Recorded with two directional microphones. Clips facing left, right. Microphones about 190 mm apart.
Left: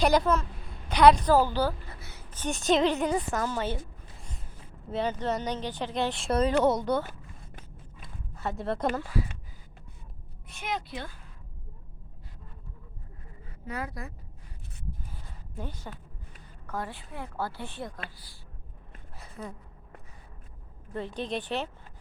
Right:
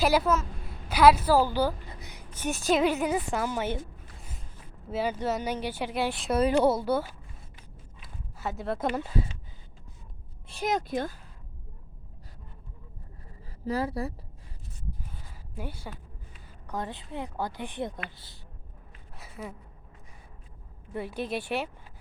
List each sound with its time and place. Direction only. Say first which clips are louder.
0.0 s a woman's voice: even; 5° right (ahead or behind)
2.5 s a woman's voice: even; centre (ahead or behind)
4.9 s speech: even; 5° right (ahead or behind)
8.0 s a sound: left 1 dB; 5° right (ahead or behind)
9.0 s a woman's voice: right 1 dB; 25° right (ahead or behind)
10.5 s speech: right 6 dB; 40° right (ahead or behind)
13.4 s a woman's voice: right 7 dB; 35° right (ahead or behind)
15.5 s a woman's voice: right 1 dB; 10° right (ahead or behind)
19.2 s a sound: even; 5° right (ahead or behind)
20.9 s speech: right 1 dB; 10° right (ahead or behind)